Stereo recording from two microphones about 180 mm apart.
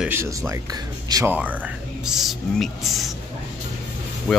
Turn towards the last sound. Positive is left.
turn(degrees=5)  # may be behind; listen again after turning